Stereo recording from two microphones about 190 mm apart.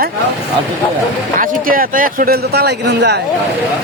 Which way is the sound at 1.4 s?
45° right (ahead or behind).